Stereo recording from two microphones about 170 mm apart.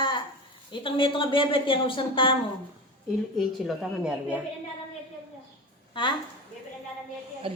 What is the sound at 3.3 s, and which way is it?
A woman's voice, centre (ahead or behind).